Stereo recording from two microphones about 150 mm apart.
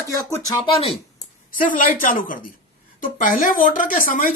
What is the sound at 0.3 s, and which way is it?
Speech, 20° left (ahead or behind).